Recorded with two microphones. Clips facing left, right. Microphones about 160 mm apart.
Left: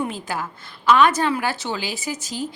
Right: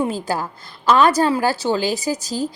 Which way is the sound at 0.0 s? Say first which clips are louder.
Right 5 dB; 35° right (ahead or behind).